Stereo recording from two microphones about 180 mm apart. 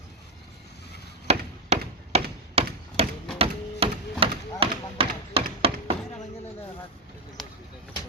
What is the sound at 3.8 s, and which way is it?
Music, 30° right (ahead or behind).